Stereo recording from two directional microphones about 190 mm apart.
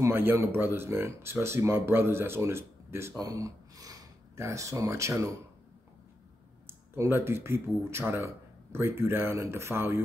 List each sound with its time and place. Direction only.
0.0 s speech: 10° right (ahead or behind)
7.0 s speech: 10° right (ahead or behind)